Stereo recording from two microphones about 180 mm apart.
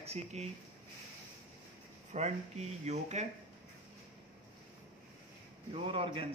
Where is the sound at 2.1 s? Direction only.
40° right (ahead or behind).